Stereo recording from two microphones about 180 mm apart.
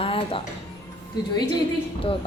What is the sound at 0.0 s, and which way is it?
Music, 30° left (ahead or behind).